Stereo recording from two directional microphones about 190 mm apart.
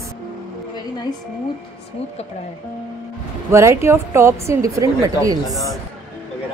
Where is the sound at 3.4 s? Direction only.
15° right (ahead or behind).